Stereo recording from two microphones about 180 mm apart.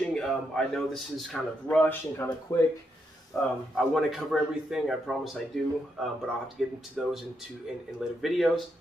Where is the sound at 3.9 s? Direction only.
Centre (ahead or behind).